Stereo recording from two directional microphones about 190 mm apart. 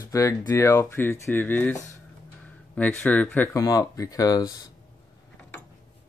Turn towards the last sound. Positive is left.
turn(degrees=20)  # may be behind; listen again after turning